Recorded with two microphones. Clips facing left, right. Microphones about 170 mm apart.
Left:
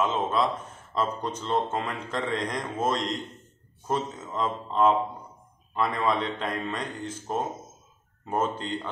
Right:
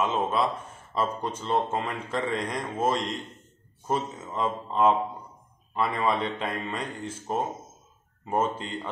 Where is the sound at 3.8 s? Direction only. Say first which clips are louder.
Even; 5° right (ahead or behind).